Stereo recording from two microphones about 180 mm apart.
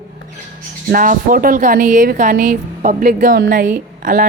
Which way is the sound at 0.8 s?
50° right (ahead or behind).